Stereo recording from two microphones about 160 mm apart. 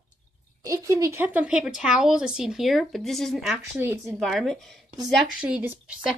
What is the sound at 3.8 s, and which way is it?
Speech, 15° right (ahead or behind).